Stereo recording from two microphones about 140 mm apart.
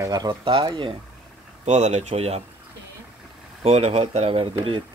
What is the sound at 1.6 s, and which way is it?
Speech, 55° right (ahead or behind).